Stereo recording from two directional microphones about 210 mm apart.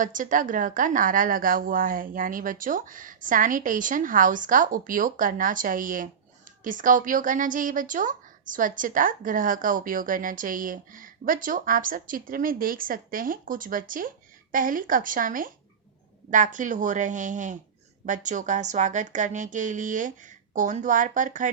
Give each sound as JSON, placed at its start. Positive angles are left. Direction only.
{"t": 0.0, "sound": "a woman's voice", "side_deg": -40}